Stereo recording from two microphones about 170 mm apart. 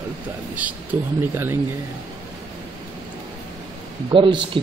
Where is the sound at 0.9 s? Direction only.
15° right (ahead or behind).